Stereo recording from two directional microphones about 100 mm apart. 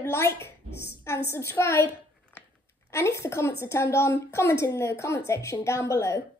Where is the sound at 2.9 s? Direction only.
30° left (ahead or behind).